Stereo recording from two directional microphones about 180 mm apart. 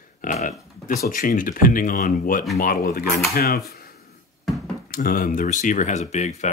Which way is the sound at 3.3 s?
60° left (ahead or behind).